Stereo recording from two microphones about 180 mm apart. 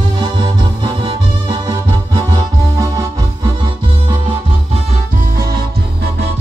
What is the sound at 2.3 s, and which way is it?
Music, 20° right (ahead or behind).